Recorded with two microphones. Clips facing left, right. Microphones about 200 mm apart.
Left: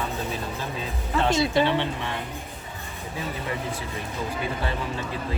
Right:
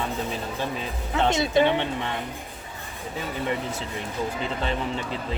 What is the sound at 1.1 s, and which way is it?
Speech, 20° right (ahead or behind).